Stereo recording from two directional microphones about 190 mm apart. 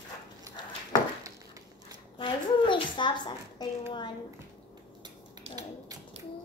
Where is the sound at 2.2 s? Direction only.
25° left (ahead or behind).